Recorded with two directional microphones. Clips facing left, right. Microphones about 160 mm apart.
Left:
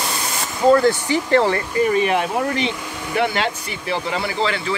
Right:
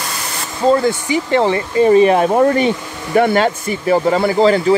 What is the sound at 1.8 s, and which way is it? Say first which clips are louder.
Speech: right 10 dB; 35° right (ahead or behind).